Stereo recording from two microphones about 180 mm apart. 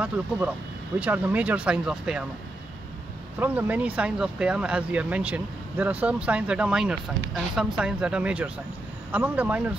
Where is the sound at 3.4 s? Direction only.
10° right (ahead or behind).